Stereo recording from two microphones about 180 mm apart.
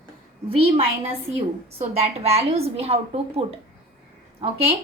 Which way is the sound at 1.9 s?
35° right (ahead or behind).